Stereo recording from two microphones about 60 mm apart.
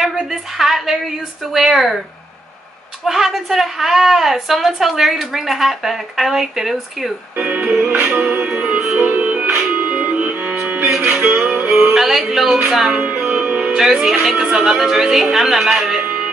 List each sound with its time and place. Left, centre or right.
0.0 s a sound: centre
1.5 s speech: centre
3.1 s a woman's voice: centre
7.3 s music: right
12.6 s a woman's voice: centre
12.9 s music: right
14.0 s speech: centre